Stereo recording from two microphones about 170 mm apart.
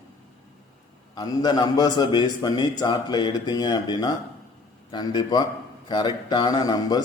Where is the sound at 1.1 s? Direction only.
25° left (ahead or behind).